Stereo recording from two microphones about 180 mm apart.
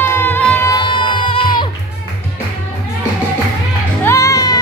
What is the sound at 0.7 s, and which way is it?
Music, 25° left (ahead or behind).